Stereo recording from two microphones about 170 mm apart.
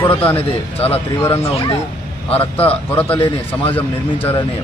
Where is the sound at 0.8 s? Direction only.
35° left (ahead or behind).